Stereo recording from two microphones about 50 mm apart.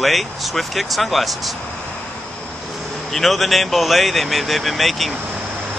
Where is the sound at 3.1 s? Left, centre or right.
Centre.